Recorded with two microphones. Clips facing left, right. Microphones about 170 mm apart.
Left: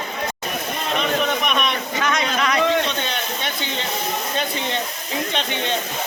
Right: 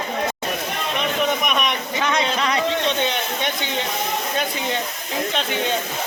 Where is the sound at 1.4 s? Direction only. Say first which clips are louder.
Even; 10° right (ahead or behind).